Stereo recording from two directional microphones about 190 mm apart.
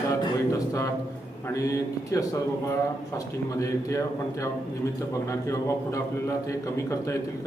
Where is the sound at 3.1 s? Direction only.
15° left (ahead or behind).